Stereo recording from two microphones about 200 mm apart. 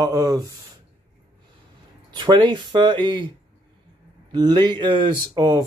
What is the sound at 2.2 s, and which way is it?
Speech, 20° right (ahead or behind).